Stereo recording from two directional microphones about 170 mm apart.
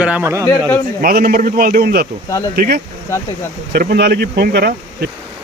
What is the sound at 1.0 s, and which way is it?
A man's voice, 60° right (ahead or behind).